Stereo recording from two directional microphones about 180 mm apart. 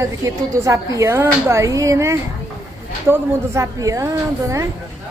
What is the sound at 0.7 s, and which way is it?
Speech, 15° right (ahead or behind).